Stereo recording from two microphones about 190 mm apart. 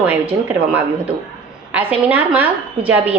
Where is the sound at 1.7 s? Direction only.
10° right (ahead or behind).